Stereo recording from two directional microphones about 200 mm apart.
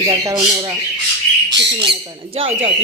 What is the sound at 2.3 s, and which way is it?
Speech, 25° right (ahead or behind).